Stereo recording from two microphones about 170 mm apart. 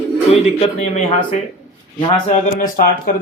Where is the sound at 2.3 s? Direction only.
55° left (ahead or behind).